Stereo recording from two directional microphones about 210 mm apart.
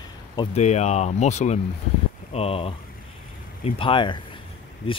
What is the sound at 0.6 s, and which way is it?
Speech, 30° left (ahead or behind).